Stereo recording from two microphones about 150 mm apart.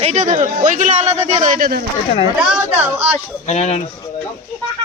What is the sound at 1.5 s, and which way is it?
Speech, 80° right.